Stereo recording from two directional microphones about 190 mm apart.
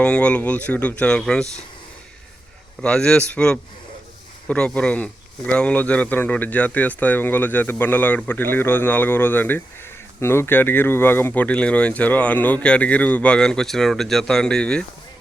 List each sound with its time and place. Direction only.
0.0 s speech: 5° left (ahead or behind)
2.8 s speech: 5° left (ahead or behind)